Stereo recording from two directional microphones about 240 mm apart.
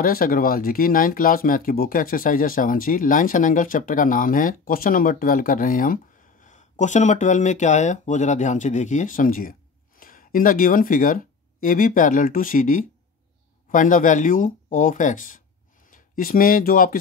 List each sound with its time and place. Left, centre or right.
0.0 s speech: left